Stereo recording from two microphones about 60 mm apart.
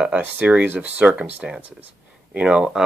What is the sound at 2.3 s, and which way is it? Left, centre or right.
Speech, centre.